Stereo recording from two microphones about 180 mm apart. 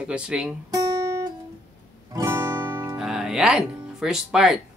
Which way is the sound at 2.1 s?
15° right (ahead or behind).